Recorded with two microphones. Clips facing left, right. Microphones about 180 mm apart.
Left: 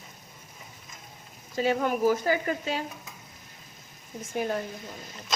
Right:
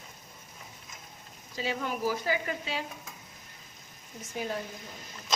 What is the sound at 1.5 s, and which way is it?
Speech, 50° left (ahead or behind).